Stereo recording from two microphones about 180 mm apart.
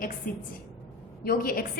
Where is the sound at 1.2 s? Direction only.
55° left (ahead or behind).